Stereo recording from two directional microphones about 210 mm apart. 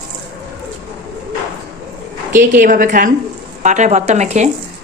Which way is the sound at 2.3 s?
40° right (ahead or behind).